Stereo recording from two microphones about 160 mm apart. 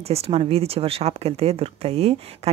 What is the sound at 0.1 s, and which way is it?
Speech, 40° right (ahead or behind).